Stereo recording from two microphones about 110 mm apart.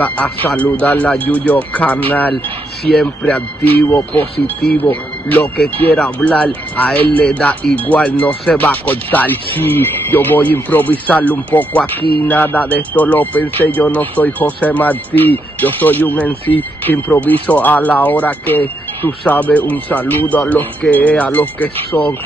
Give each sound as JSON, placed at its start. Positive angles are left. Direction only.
{"t": 0.0, "sound": "speech", "side_deg": 15}
{"t": 3.7, "sound": "speech", "side_deg": 20}
{"t": 5.9, "sound": "speech", "side_deg": 10}